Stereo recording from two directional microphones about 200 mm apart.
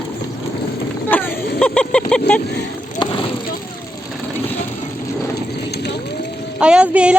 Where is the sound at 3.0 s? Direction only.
25° left (ahead or behind).